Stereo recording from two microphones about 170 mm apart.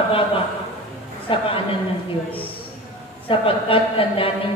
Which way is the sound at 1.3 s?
35° left (ahead or behind).